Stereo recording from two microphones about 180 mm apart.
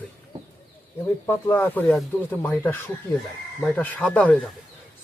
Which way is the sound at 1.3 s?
15° left (ahead or behind).